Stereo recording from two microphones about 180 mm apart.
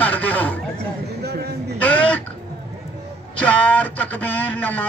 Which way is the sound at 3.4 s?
5° left (ahead or behind).